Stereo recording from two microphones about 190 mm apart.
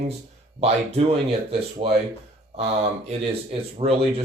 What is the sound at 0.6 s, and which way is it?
Speech, 35° right (ahead or behind).